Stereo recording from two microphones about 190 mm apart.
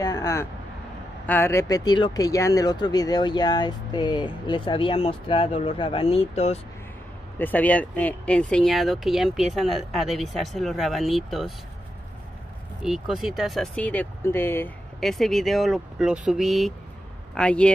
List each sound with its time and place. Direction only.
0.0 s vehicle: 20° left (ahead or behind)
1.2 s speech: 10° left (ahead or behind); by 6.6 s 35° left (ahead or behind)
7.3 s speech: 10° left (ahead or behind)
12.8 s speech: centre (ahead or behind)